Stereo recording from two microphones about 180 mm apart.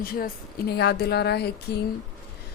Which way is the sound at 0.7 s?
65° left (ahead or behind).